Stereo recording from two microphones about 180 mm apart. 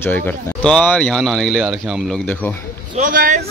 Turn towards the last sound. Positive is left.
turn(degrees=-50)  # may be behind; listen again after turning